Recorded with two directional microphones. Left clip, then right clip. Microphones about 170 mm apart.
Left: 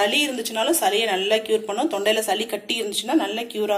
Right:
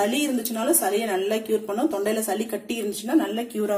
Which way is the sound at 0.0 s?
40° right (ahead or behind).